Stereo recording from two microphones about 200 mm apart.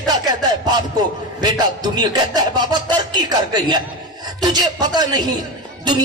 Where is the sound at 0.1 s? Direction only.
20° right (ahead or behind).